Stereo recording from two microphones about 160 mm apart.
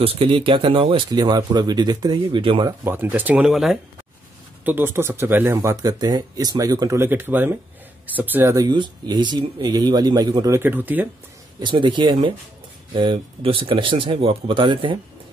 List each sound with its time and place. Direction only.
0.0 s speech: 35° right (ahead or behind)
2.8 s speech: 15° right (ahead or behind)
4.6 s speech: 15° right (ahead or behind)
8.6 s speech: 30° right (ahead or behind); by 11.1 s 10° right (ahead or behind)
11.6 s speech: 30° right (ahead or behind)